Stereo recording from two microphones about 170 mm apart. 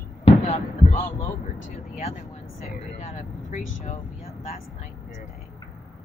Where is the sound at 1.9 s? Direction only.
40° left (ahead or behind).